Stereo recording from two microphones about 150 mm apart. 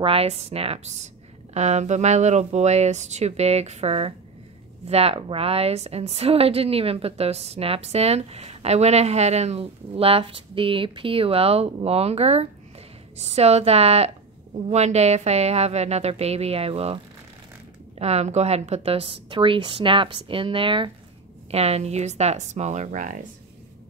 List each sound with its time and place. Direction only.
0.0 s a woman's voice: 40° right (ahead or behind); by 23.1 s 60° right (ahead or behind)